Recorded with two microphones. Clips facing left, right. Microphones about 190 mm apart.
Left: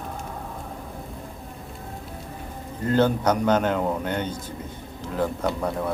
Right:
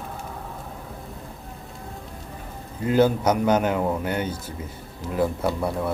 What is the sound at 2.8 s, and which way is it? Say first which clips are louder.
A man's voice: right 1 dB; 10° right (ahead or behind).